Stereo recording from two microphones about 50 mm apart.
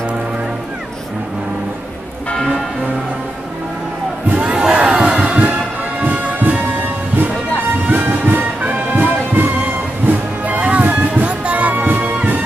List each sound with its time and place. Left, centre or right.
4.3 s crowd: right
5.4 s music: right
6.4 s music: right
7.9 s music: right